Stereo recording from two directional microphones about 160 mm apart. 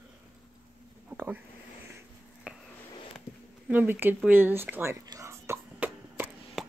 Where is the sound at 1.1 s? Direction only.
10° right (ahead or behind).